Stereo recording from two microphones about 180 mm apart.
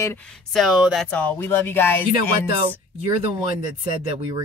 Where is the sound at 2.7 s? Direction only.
25° right (ahead or behind).